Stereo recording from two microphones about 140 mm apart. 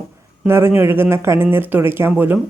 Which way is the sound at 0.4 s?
15° right (ahead or behind).